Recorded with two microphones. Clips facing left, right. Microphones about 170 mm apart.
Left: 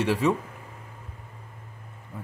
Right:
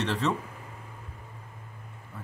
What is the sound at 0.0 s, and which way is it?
Speech, 10° left (ahead or behind).